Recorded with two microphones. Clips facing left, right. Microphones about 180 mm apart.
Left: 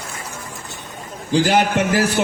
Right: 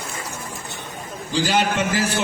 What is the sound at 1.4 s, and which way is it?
Speech, 60° left (ahead or behind).